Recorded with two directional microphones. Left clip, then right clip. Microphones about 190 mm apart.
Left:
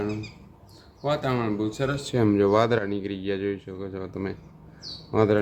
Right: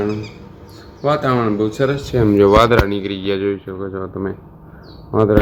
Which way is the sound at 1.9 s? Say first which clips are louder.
Right 8 dB; 25° left (ahead or behind).